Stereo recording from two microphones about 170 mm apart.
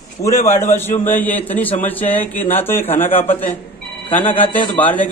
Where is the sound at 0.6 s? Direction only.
10° left (ahead or behind).